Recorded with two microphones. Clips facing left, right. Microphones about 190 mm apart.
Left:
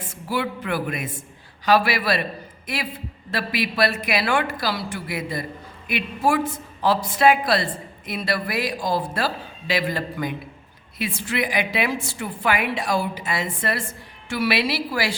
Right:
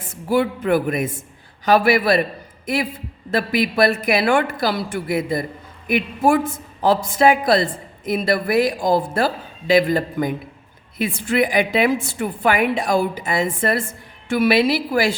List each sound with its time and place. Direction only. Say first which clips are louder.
0.1 s a woman's voice: right 7 dB; 50° right (ahead or behind)
3.3 s a woman's voice: right 6 dB; 50° right (ahead or behind)